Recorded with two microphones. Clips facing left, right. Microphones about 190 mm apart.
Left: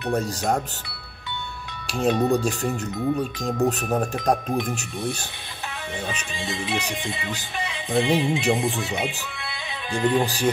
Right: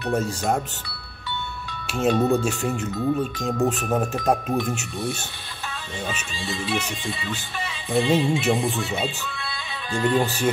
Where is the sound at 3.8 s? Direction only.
15° left (ahead or behind).